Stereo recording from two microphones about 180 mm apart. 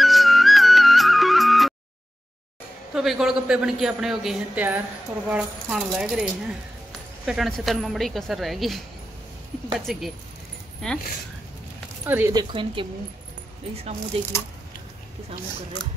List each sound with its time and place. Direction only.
0.0 s music: centre (ahead or behind)
2.9 s a man's voice: 5° right (ahead or behind)
12.0 s speech: 10° right (ahead or behind)
12.4 s speech: 30° right (ahead or behind)
14.1 s speech: 35° right (ahead or behind)